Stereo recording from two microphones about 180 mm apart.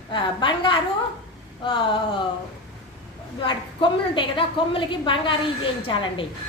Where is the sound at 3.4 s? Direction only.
25° left (ahead or behind).